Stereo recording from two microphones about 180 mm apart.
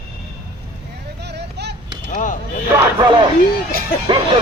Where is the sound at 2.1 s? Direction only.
45° left (ahead or behind).